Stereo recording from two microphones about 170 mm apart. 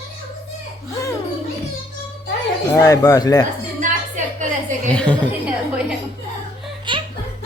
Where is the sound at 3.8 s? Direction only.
45° right (ahead or behind).